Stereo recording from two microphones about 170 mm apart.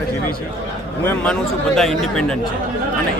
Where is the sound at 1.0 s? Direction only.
10° left (ahead or behind).